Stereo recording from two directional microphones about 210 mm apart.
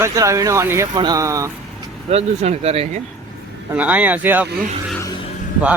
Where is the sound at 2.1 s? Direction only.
30° right (ahead or behind).